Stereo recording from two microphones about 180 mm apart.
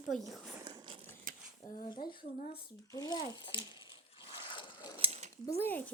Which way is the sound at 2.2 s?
55° left (ahead or behind).